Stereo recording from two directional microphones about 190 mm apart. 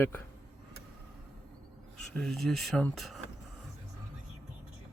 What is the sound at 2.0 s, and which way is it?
Speech, 5° left (ahead or behind).